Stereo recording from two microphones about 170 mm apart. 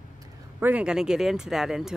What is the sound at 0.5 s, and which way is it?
Speech, 10° right (ahead or behind).